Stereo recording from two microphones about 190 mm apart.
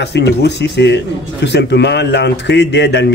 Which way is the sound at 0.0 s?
65° left (ahead or behind).